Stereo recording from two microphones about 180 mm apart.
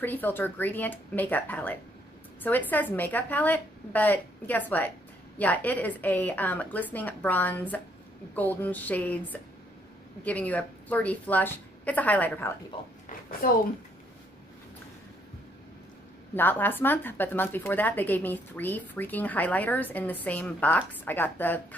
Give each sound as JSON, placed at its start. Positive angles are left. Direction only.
{"t": 0.0, "sound": "a woman's voice", "side_deg": 10}
{"t": 13.4, "sound": "speech", "side_deg": 50}
{"t": 16.3, "sound": "a woman's voice", "side_deg": 10}